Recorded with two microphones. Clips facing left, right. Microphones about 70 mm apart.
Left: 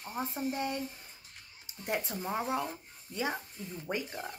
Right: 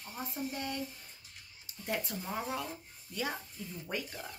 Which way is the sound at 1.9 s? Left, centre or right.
Left.